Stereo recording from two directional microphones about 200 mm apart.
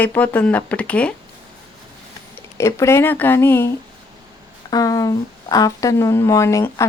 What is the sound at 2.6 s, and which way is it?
Speech, 15° left (ahead or behind).